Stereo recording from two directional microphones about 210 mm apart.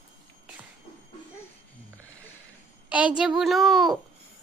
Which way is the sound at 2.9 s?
5° right (ahead or behind).